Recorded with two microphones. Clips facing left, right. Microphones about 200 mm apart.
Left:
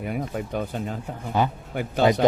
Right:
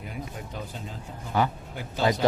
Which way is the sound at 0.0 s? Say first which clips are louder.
Left 9 dB; 60° left (ahead or behind).